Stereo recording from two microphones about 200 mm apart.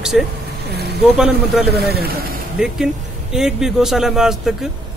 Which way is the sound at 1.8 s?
50° right (ahead or behind).